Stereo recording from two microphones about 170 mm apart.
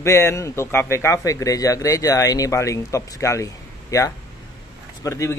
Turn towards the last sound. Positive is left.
turn(degrees=15)  # may be behind; listen again after turning